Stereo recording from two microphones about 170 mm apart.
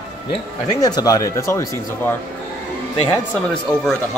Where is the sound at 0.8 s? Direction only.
20° left (ahead or behind).